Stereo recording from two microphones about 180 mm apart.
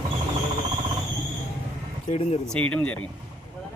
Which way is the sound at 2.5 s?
5° left (ahead or behind).